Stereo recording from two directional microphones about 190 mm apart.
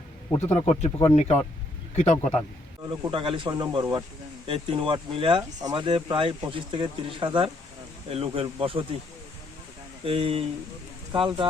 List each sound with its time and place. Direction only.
0.3 s speech: 35° left (ahead or behind)
0.9 s speech: 15° left (ahead or behind)
1.1 s speech: 35° left (ahead or behind)
3.0 s speech: 25° right (ahead or behind)
10.0 s speech: 30° right (ahead or behind)